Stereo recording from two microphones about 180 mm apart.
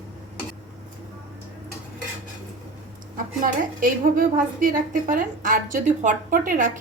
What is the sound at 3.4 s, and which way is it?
A woman's voice, 50° right (ahead or behind).